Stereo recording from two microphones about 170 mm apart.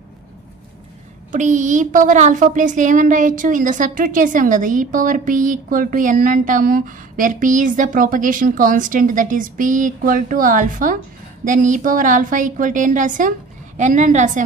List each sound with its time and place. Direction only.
1.3 s a woman's voice: 45° right (ahead or behind)